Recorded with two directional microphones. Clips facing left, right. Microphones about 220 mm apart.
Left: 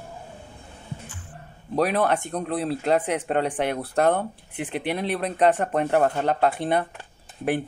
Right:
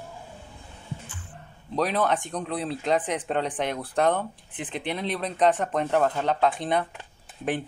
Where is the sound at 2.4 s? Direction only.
55° left (ahead or behind).